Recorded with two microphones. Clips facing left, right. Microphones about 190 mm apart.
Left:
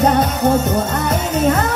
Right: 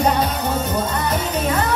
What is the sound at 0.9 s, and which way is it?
Music, 45° left (ahead or behind).